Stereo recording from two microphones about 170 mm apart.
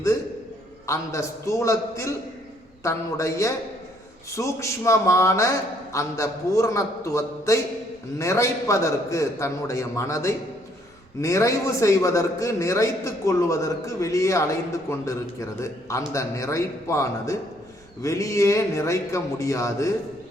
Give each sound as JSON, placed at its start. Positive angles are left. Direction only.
{"t": 0.9, "sound": "a man's voice", "side_deg": 15}